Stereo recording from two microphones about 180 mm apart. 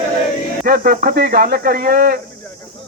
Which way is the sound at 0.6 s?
55° right (ahead or behind).